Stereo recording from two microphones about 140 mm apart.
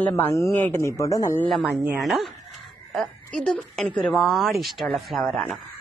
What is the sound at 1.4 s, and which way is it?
Speech, centre (ahead or behind).